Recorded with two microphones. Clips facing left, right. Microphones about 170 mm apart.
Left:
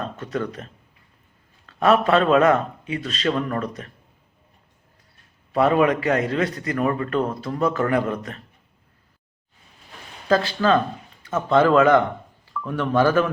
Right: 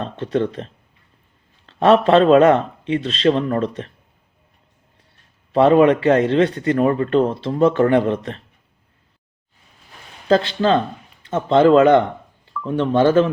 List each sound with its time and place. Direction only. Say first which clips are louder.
0.0 s a man's voice: right 6 dB; 30° right (ahead or behind)
5.5 s a man's voice: right 6 dB; 30° right (ahead or behind)
10.2 s a man's voice: right 3 dB; 30° right (ahead or behind)